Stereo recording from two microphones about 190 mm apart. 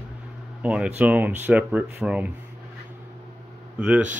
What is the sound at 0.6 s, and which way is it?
Speech, 5° right (ahead or behind).